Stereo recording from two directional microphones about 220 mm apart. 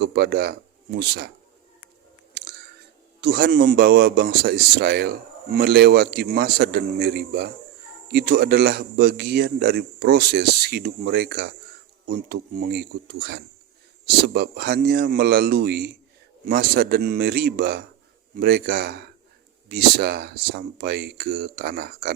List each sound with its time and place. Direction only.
0.0 s a man's voice: 50° right (ahead or behind)
3.2 s a man's voice: 45° right (ahead or behind)